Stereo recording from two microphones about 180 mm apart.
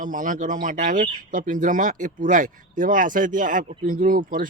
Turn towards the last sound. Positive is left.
turn(degrees=-50)  # may be behind; listen again after turning